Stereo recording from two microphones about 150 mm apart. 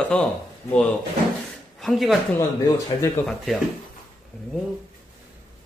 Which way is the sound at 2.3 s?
20° left (ahead or behind).